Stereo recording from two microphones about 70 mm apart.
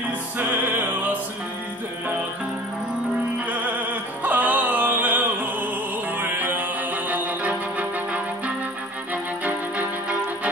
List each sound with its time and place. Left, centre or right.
0.4 s music: right
4.2 s music: right